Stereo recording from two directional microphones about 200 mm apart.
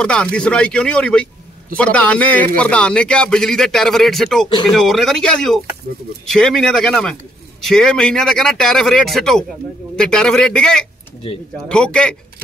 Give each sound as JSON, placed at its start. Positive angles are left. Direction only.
{"t": 0.0, "sound": "a man's voice", "side_deg": 5}
{"t": 11.3, "sound": "speech", "side_deg": 25}
{"t": 11.7, "sound": "a man's voice", "side_deg": 5}